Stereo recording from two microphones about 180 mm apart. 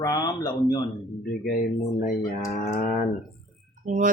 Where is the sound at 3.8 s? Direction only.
45° right (ahead or behind).